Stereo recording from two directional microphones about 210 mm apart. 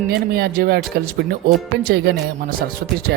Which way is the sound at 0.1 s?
50° right (ahead or behind).